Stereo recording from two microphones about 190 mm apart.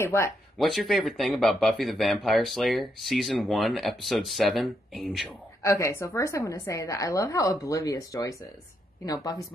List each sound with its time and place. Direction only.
0.0 s a woman's voice: 15° left (ahead or behind)
0.6 s speech: centre (ahead or behind)
5.6 s a woman's voice: 15° left (ahead or behind)